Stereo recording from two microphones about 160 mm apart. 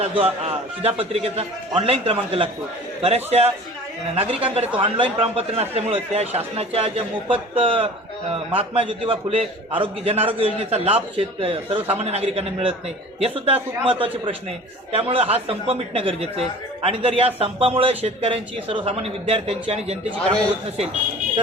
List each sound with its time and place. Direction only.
0.0 s a man's voice: 35° right (ahead or behind)